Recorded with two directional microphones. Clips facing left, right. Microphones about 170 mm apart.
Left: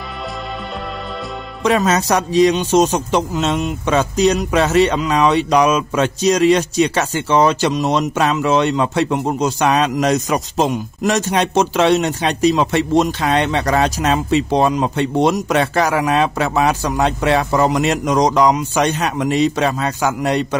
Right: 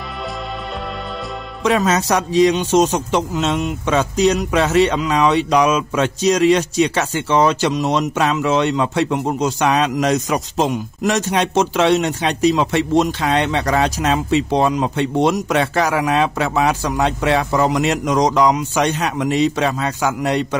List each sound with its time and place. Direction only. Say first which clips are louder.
1.6 s a man's voice: left 1 dB; 40° left (ahead or behind)